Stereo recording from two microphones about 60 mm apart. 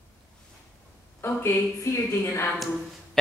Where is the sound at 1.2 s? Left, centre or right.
Left.